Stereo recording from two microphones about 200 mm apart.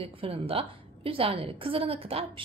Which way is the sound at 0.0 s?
30° right (ahead or behind).